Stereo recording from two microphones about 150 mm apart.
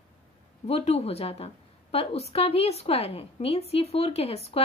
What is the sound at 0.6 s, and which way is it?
A woman's voice, 45° left (ahead or behind).